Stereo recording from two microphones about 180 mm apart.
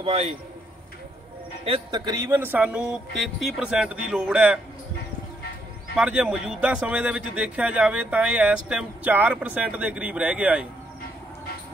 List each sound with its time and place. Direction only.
0.0 s a man's voice: 30° right (ahead or behind)
1.6 s a man's voice: 30° right (ahead or behind); by 4.6 s 5° right (ahead or behind)
5.9 s a man's voice: 5° right (ahead or behind)